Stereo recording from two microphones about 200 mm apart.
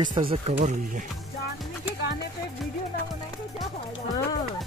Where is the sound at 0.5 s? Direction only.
40° right (ahead or behind).